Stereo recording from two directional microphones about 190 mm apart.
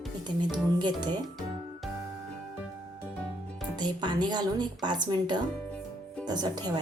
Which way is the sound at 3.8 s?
25° right (ahead or behind).